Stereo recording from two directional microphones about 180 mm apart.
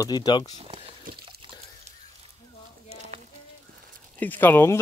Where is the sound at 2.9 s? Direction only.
40° right (ahead or behind).